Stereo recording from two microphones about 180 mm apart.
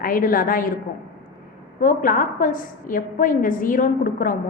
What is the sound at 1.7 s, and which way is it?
A woman's voice, 50° left (ahead or behind).